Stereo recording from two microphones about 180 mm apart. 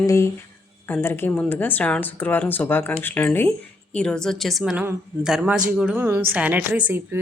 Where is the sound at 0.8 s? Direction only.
10° left (ahead or behind).